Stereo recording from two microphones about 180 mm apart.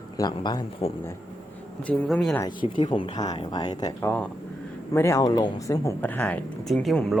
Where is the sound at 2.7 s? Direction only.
25° left (ahead or behind).